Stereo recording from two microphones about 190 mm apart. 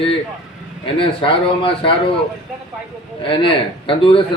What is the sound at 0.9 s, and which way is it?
Speech, 30° left (ahead or behind).